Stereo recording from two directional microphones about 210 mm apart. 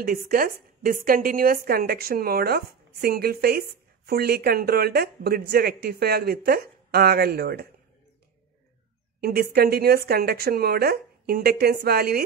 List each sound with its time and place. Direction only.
0.0 s a woman's voice: 45° right (ahead or behind)
9.2 s a woman's voice: 45° right (ahead or behind)